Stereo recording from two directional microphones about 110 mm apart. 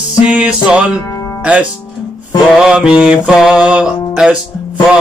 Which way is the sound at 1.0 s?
25° left (ahead or behind).